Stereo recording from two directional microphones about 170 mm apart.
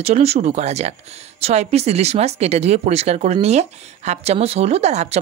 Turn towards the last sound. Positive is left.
turn(degrees=-40)  # may be behind; listen again after turning